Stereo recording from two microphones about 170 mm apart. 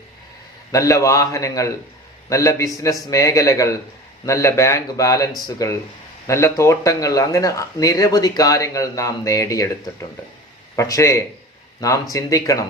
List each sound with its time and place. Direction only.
0.7 s speech: 20° left (ahead or behind)